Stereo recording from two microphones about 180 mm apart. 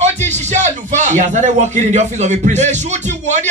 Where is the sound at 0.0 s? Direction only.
40° right (ahead or behind).